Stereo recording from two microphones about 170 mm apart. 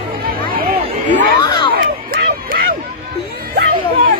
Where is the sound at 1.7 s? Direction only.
55° right (ahead or behind).